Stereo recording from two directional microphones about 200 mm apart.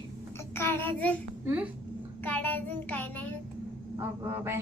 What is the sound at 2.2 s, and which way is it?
A child's voice, 10° left (ahead or behind).